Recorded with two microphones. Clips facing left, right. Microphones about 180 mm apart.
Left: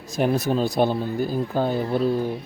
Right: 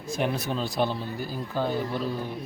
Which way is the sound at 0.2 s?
45° left (ahead or behind).